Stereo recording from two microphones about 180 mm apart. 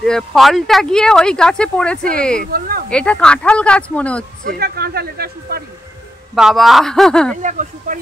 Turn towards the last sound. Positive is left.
turn(degrees=-45)  # may be behind; listen again after turning